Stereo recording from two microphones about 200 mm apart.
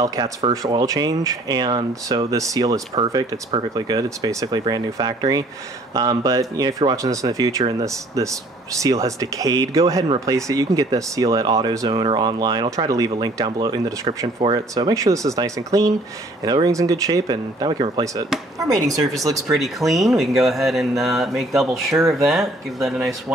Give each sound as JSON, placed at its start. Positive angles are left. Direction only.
{"t": 0.0, "sound": "speech", "side_deg": -20}
{"t": 19.2, "sound": "speech", "side_deg": -15}
{"t": 19.6, "sound": "speech", "side_deg": 0}